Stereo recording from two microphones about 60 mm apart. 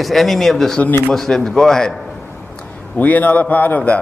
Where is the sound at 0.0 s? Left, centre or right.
Centre.